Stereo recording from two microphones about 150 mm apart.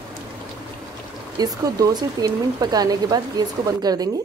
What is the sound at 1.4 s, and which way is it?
Speech, 25° right (ahead or behind).